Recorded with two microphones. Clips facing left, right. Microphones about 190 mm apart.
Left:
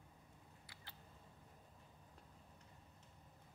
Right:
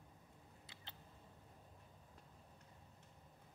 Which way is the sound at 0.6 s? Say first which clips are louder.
Right 2 dB; 25° right (ahead or behind).